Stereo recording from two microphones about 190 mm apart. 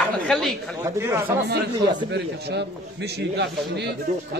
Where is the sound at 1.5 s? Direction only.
60° right (ahead or behind).